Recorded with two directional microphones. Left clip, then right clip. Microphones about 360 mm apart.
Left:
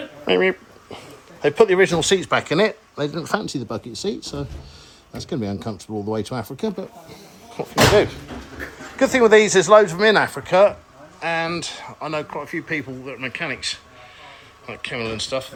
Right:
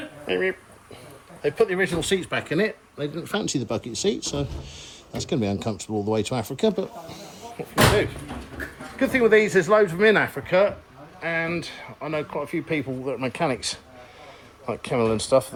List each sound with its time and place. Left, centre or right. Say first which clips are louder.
1.4 s speech: left 7 dB; centre
3.3 s speech: right 1 dB; centre
7.1 s speech: right 2 dB; centre